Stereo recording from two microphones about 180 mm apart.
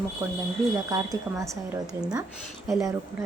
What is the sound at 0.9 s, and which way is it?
Speech, 20° right (ahead or behind).